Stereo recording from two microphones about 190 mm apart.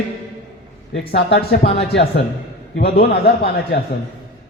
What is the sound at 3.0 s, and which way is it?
Speech, 55° left (ahead or behind).